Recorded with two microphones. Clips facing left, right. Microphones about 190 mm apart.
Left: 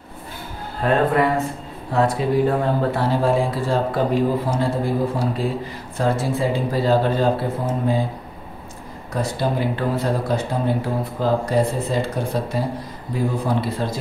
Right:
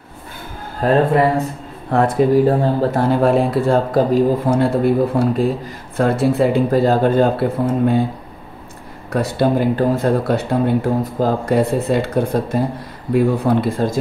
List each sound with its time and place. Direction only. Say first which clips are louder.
0.8 s speech: right 4 dB; 40° right (ahead or behind)
1.9 s speech: right 5 dB; 55° right (ahead or behind)
2.4 s speech: right 4 dB; 35° right (ahead or behind)
3.2 s speech: right 6 dB; 60° right (ahead or behind)
3.9 s speech: right 5 dB; 40° right (ahead or behind)
4.6 s speech: right 6 dB; 65° right (ahead or behind)
9.1 s speech: right 6 dB; 60° right (ahead or behind)